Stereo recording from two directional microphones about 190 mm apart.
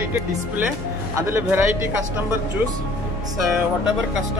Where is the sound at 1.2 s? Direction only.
10° right (ahead or behind).